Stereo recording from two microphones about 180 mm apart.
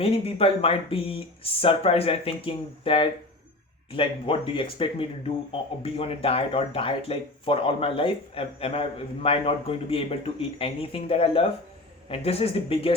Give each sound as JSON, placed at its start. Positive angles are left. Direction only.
{"t": 0.0, "sound": "speech", "side_deg": 35}